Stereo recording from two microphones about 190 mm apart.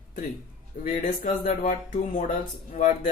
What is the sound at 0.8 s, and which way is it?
Speech, 45° left (ahead or behind).